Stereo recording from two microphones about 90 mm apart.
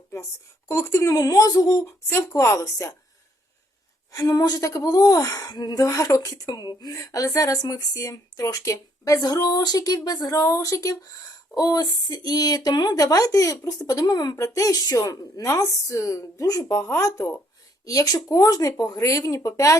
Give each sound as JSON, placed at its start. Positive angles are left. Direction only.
{"t": 0.7, "sound": "a woman's voice", "side_deg": 35}
{"t": 2.0, "sound": "a woman's voice", "side_deg": 35}
{"t": 4.1, "sound": "a woman's voice", "side_deg": 45}
{"t": 6.9, "sound": "a woman's voice", "side_deg": 40}